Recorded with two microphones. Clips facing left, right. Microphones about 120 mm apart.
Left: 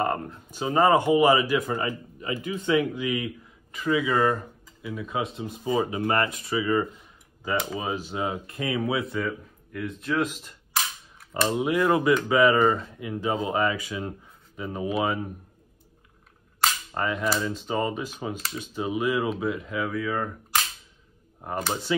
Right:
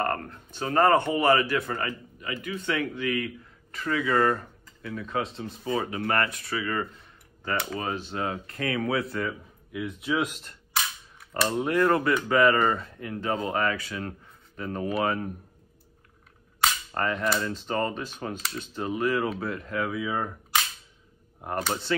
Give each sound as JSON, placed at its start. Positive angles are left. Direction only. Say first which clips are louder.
{"t": 0.0, "sound": "speech", "louder": "left 2 dB", "side_deg": 10}
{"t": 5.4, "sound": "speech", "louder": "left 3 dB", "side_deg": 15}
{"t": 8.8, "sound": "cap gun", "louder": "left 1 dB", "side_deg": 0}
{"t": 11.1, "sound": "speech", "louder": "left 2 dB", "side_deg": 0}
{"t": 16.6, "sound": "cap gun", "louder": "even", "side_deg": 5}
{"t": 21.4, "sound": "cap gun", "louder": "even", "side_deg": 0}